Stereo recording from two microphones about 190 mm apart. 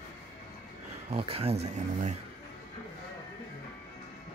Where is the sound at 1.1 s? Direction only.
30° right (ahead or behind).